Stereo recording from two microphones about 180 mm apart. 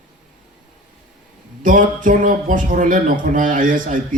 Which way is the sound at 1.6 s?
45° right (ahead or behind).